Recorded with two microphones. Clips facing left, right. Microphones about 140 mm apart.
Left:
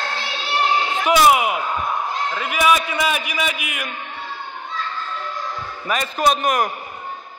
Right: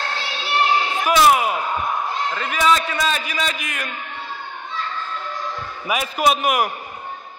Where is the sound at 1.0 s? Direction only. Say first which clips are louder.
Left 1 dB; 15° left (ahead or behind).